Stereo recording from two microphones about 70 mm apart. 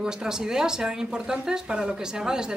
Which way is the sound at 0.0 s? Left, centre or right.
Centre.